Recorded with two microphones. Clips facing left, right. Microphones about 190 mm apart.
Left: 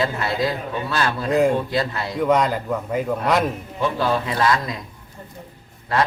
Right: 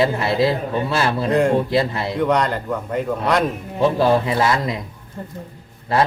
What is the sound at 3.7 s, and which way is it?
A man's voice, 25° right (ahead or behind).